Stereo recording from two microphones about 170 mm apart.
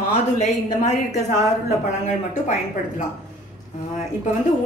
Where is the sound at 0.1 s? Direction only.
40° left (ahead or behind).